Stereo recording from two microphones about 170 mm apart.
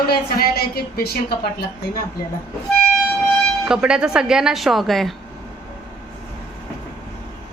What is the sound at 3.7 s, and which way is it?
Speech, 5° right (ahead or behind).